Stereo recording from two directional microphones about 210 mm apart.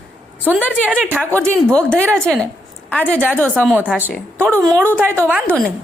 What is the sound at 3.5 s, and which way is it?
Speech, 5° right (ahead or behind).